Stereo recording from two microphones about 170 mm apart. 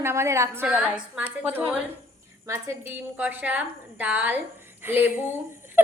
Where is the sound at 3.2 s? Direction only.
10° right (ahead or behind).